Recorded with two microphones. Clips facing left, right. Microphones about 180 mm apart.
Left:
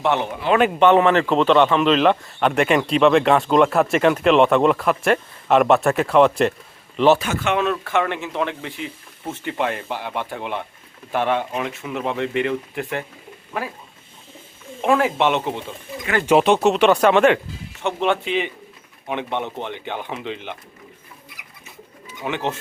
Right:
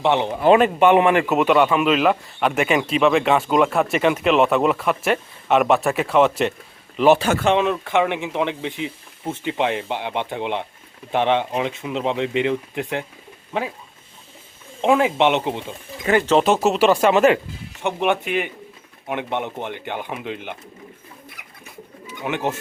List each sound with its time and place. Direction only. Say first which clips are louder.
0.0 s a man's voice: right 4 dB; 20° right (ahead or behind)
7.2 s speech: right 4 dB; 30° right (ahead or behind)
7.6 s speech: right 1 dB; 15° right (ahead or behind)
14.8 s speech: right 1 dB; 15° right (ahead or behind)
16.4 s a man's voice: left 1 dB; centre (ahead or behind)
17.8 s speech: even; 15° right (ahead or behind)
22.2 s speech: right 1 dB; 10° right (ahead or behind)